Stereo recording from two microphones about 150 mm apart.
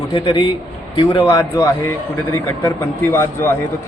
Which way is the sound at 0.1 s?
30° left (ahead or behind).